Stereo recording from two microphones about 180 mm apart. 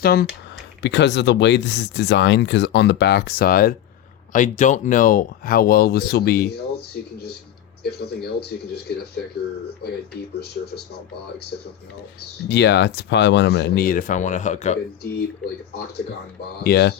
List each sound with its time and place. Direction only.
0.0 s speech: 55° left (ahead or behind)
0.8 s speech: 75° left (ahead or behind)
12.5 s speech: 70° left (ahead or behind); by 14.8 s 40° left (ahead or behind)
16.6 s speech: 60° left (ahead or behind)